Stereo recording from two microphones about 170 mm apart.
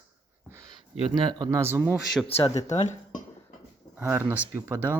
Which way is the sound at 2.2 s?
35° left (ahead or behind).